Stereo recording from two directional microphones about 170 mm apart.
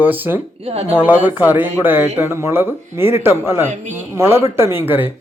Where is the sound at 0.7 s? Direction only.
35° right (ahead or behind).